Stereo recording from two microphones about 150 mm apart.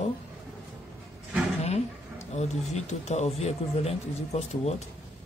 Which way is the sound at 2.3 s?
45° left (ahead or behind).